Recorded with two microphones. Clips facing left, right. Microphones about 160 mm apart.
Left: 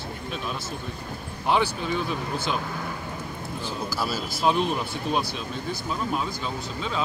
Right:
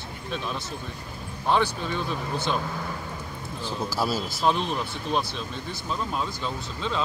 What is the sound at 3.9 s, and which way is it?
Speech, 30° right (ahead or behind).